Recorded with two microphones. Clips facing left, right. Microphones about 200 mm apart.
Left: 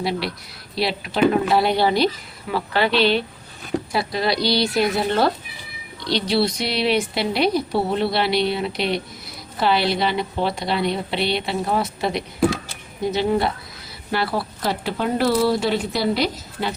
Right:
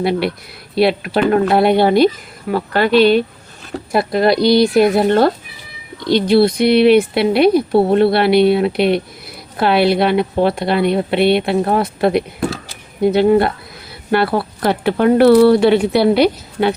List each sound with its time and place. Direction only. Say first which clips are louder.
0.0 s a woman's voice: right 8 dB; 55° right (ahead or behind)